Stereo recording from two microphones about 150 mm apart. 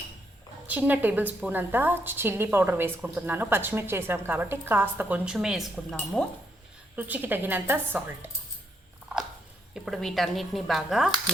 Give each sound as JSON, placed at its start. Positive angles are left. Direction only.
{"t": 0.7, "sound": "a woman's voice", "side_deg": -10}
{"t": 6.9, "sound": "a woman's voice", "side_deg": -10}
{"t": 9.8, "sound": "speech", "side_deg": 0}